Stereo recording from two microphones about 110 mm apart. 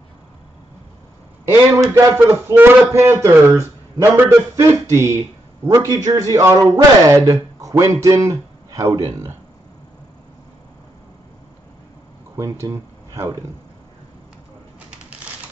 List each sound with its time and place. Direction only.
1.4 s a man's voice: 25° right (ahead or behind)
12.4 s speech: 30° right (ahead or behind)